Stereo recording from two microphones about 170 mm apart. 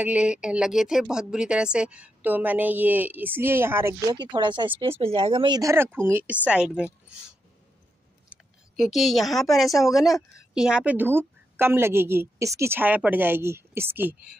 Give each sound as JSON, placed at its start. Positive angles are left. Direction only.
{"t": 0.0, "sound": "speech", "side_deg": -5}
{"t": 4.1, "sound": "speech", "side_deg": -25}
{"t": 8.3, "sound": "speech", "side_deg": 0}